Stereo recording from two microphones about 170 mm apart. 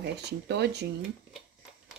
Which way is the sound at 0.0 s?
80° right.